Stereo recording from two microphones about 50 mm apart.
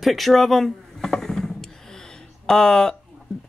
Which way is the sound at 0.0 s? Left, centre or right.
Centre.